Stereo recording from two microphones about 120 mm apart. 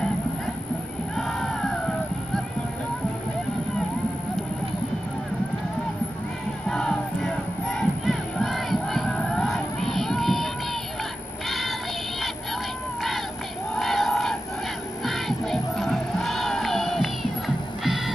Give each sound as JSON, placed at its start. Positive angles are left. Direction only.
{"t": 1.1, "sound": "music", "side_deg": 5}
{"t": 6.7, "sound": "battle cry", "side_deg": 5}
{"t": 11.4, "sound": "synthetic singing", "side_deg": 0}
{"t": 13.7, "sound": "battle cry", "side_deg": 0}
{"t": 15.0, "sound": "crowd", "side_deg": 0}
{"t": 17.8, "sound": "music", "side_deg": 0}